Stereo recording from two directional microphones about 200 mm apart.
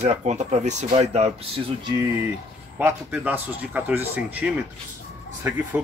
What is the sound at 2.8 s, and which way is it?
Speech, 10° right (ahead or behind).